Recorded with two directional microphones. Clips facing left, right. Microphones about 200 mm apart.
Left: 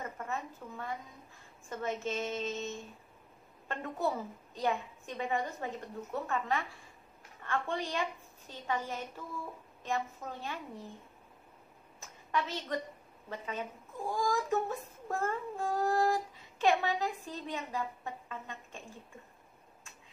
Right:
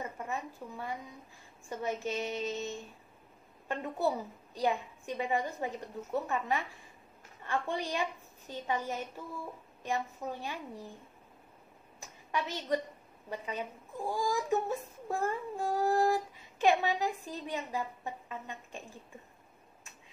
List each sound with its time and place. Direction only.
0.0 s a woman's voice: 15° right (ahead or behind)
12.0 s a sound: 15° right (ahead or behind)
13.3 s speech: 15° right (ahead or behind)